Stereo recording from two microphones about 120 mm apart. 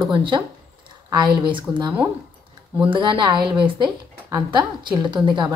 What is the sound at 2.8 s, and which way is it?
A woman's voice, 45° right (ahead or behind).